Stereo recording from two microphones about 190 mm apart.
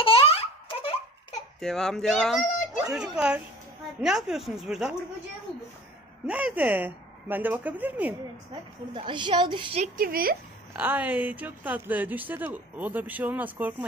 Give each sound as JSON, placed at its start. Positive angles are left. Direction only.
{"t": 0.0, "sound": "baby laughter", "side_deg": 30}
{"t": 1.6, "sound": "speech", "side_deg": 0}
{"t": 6.2, "sound": "speech", "side_deg": -5}
{"t": 8.9, "sound": "a woman's voice", "side_deg": -25}
{"t": 9.9, "sound": "speech", "side_deg": -50}
{"t": 10.8, "sound": "speech", "side_deg": -10}